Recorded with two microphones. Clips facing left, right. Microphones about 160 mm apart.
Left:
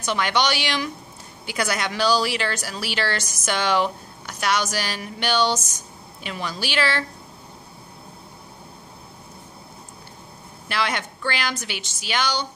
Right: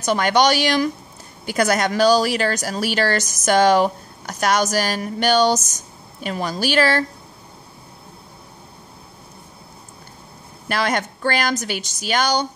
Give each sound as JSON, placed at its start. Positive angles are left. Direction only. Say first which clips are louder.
{"t": 0.0, "sound": "speech", "louder": "right 6 dB", "side_deg": -45}
{"t": 10.7, "sound": "speech", "louder": "right 4 dB", "side_deg": -45}